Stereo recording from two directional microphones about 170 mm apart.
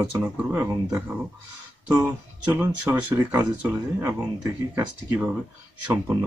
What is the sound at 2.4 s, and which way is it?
Speech, 10° right (ahead or behind).